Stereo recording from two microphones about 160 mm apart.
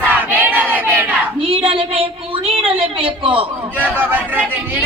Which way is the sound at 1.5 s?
35° right (ahead or behind).